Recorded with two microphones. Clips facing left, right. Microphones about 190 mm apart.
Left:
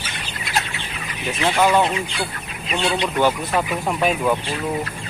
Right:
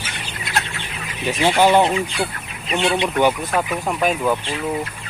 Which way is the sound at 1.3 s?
30° right (ahead or behind).